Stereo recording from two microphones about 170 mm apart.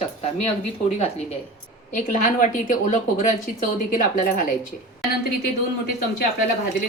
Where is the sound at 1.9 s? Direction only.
50° left (ahead or behind).